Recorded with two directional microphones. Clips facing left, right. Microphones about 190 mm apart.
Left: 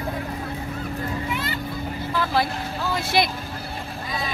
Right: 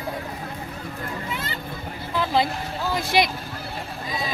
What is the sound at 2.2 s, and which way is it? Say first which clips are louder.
Vehicle: right 2 dB; 20° right (ahead or behind).